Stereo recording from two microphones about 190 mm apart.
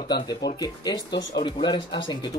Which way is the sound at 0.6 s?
20° left (ahead or behind).